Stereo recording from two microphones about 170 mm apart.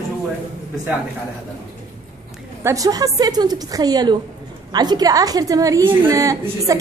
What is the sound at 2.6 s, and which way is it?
A woman's voice, 20° right (ahead or behind).